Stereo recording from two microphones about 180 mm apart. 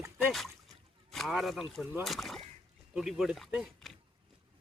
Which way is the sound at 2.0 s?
Centre (ahead or behind).